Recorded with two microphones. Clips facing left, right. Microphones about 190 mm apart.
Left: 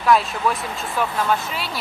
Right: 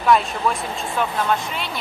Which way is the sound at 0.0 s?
Centre (ahead or behind).